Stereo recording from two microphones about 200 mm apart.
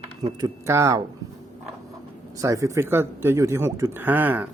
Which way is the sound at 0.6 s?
15° right (ahead or behind).